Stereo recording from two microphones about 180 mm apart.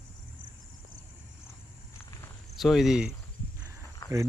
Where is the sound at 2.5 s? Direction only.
Centre (ahead or behind).